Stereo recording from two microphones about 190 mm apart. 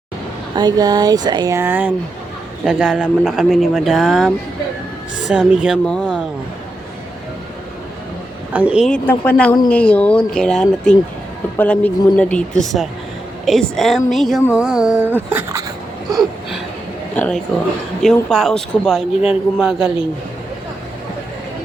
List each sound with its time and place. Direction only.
0.5 s speech: 20° right (ahead or behind); by 4.3 s centre (ahead or behind)
5.3 s speech: 5° right (ahead or behind)
8.5 s speech: 5° right (ahead or behind)
8.9 s speech: 10° left (ahead or behind); by 15.6 s 10° right (ahead or behind)
17.2 s speech: 5° left (ahead or behind)